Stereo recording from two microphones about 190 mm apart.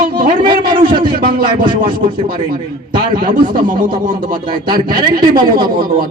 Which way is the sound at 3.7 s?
45° right (ahead or behind).